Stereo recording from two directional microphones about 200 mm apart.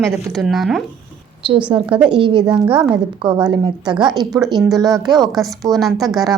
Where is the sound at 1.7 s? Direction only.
25° right (ahead or behind).